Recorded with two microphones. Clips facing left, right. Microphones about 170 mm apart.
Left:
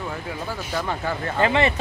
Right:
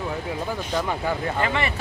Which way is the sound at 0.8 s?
10° right (ahead or behind).